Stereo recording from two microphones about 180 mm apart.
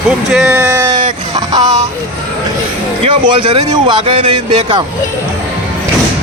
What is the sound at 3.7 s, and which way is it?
Speech, 25° right (ahead or behind).